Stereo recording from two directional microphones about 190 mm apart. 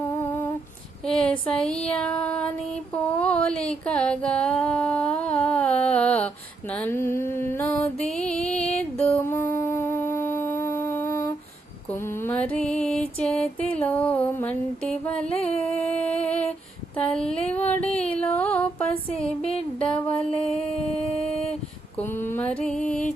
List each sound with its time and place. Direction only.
0.0 s lullaby: 15° left (ahead or behind)
1.0 s a sound: 5° left (ahead or behind)
4.6 s humming: 5° left (ahead or behind)
11.9 s music: 10° left (ahead or behind)
15.4 s humming: 5° left (ahead or behind)
16.9 s a sound: 5° left (ahead or behind)
19.4 s music: 30° left (ahead or behind)
20.1 s a sound: 5° left (ahead or behind)
21.9 s mantra: 10° left (ahead or behind)